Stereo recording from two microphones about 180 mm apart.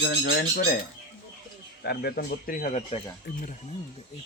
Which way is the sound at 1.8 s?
65° left (ahead or behind).